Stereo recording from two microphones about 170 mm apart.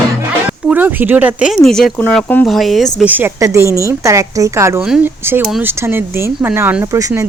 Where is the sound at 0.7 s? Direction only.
10° right (ahead or behind).